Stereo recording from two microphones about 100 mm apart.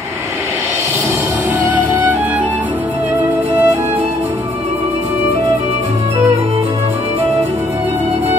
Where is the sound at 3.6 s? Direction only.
20° right (ahead or behind).